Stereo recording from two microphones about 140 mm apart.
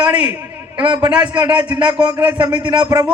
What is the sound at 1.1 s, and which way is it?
A man's voice, 10° right (ahead or behind).